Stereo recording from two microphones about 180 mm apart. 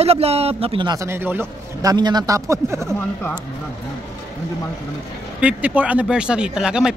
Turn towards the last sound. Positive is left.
turn(degrees=-5)  # may be behind; listen again after turning